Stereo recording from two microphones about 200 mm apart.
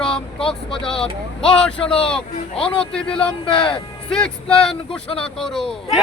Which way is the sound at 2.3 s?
30° left (ahead or behind).